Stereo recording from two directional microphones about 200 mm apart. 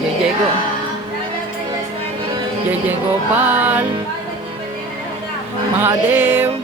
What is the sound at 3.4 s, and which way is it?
Music, 10° right (ahead or behind).